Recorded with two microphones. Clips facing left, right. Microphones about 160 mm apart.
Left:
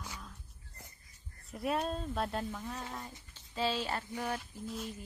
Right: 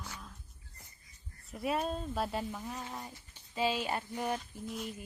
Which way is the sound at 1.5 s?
Centre (ahead or behind).